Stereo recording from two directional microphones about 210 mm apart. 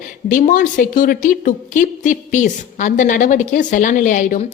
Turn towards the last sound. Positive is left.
turn(degrees=40)  # may be behind; listen again after turning